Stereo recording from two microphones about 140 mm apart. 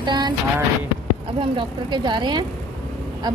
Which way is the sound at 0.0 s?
35° right (ahead or behind).